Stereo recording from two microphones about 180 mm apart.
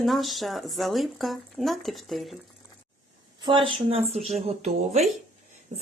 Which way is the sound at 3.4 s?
30° right (ahead or behind).